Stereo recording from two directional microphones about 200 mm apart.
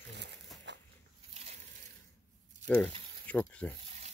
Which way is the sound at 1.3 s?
30° right (ahead or behind).